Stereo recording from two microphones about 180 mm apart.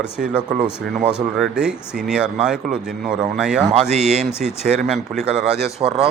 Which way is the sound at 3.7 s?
40° right (ahead or behind).